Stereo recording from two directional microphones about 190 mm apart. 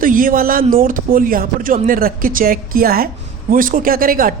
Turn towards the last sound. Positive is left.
turn(degrees=-50)  # may be behind; listen again after turning